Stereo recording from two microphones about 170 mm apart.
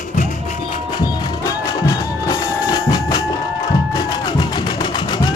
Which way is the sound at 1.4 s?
20° left (ahead or behind).